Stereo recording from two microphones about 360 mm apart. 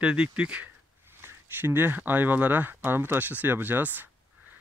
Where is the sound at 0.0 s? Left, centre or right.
Centre.